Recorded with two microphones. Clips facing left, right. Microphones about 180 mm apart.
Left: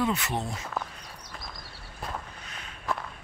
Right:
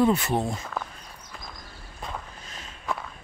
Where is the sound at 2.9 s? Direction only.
Centre (ahead or behind).